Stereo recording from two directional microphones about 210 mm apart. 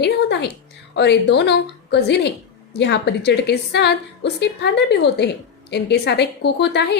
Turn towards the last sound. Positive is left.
turn(degrees=55)  # may be behind; listen again after turning